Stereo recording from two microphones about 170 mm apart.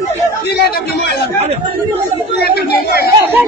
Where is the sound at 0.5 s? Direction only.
70° left (ahead or behind).